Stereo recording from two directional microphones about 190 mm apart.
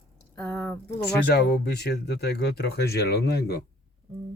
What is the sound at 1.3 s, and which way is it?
Speech, 60° left (ahead or behind).